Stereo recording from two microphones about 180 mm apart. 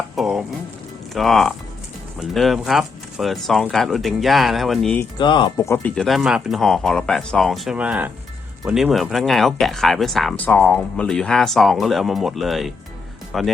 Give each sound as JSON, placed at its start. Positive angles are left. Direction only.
{"t": 0.2, "sound": "frying", "side_deg": 0}
{"t": 1.1, "sound": "speech", "side_deg": 0}
{"t": 5.2, "sound": "speech", "side_deg": 25}
{"t": 5.5, "sound": "speech", "side_deg": 15}